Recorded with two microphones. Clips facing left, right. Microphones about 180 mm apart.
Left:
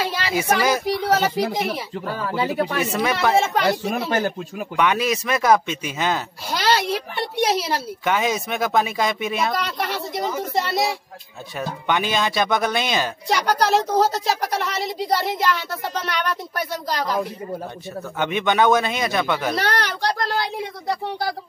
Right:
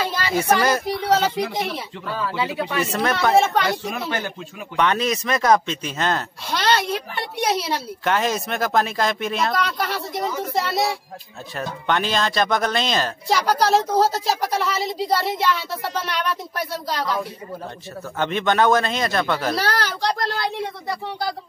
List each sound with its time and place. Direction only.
0.3 s speech: 5° left (ahead or behind)
2.0 s speech: 45° left (ahead or behind)
2.8 s speech: 5° left (ahead or behind)
4.0 s speech: 40° left (ahead or behind)
4.7 s speech: 5° left (ahead or behind)
18.2 s speech: 5° left (ahead or behind)